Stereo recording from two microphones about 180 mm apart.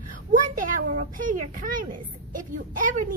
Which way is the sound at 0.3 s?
45° right (ahead or behind).